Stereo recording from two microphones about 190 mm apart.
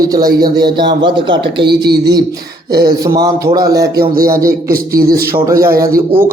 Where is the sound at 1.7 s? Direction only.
60° right (ahead or behind).